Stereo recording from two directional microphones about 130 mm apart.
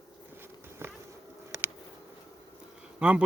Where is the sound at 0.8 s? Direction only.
20° right (ahead or behind).